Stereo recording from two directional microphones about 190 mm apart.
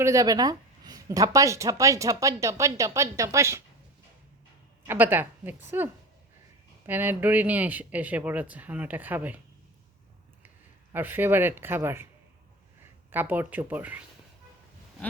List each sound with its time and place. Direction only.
0.0 s speech: 15° right (ahead or behind)
4.9 s speech: 10° right (ahead or behind)
6.8 s speech: 10° right (ahead or behind)
10.9 s speech: 10° right (ahead or behind)
13.1 s speech: 10° right (ahead or behind)